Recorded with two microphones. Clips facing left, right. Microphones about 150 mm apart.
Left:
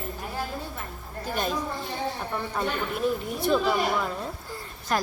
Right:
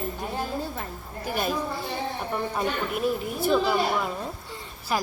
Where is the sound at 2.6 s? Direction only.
5° right (ahead or behind).